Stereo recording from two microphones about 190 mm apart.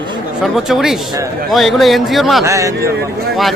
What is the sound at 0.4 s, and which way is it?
A man's voice, centre (ahead or behind).